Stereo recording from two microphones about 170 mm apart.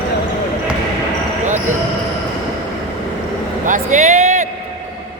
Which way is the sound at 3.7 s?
45° right (ahead or behind).